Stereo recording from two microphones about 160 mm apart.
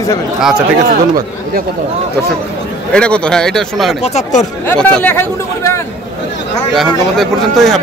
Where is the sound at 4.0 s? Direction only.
45° left (ahead or behind).